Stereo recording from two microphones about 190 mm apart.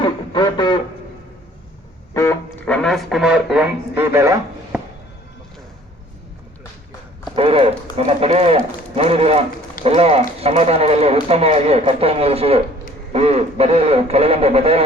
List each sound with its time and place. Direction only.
0.0 s a sound: 25° left (ahead or behind)
2.1 s speech: 15° left (ahead or behind); by 4.4 s 15° right (ahead or behind)
4.7 s music: 5° right (ahead or behind)
7.3 s speech: 30° right (ahead or behind)